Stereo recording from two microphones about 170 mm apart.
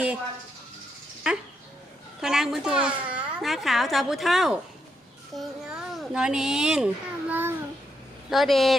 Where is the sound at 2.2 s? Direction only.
5° right (ahead or behind).